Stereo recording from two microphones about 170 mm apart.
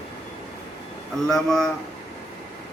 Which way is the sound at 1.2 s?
5° left (ahead or behind).